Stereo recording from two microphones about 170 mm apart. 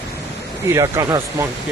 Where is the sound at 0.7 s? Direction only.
20° right (ahead or behind).